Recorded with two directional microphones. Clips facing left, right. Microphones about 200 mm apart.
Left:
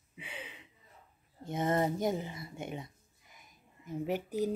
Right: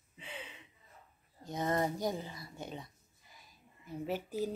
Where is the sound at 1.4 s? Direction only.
25° left (ahead or behind).